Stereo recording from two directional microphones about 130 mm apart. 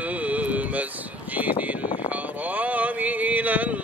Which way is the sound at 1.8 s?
35° left (ahead or behind).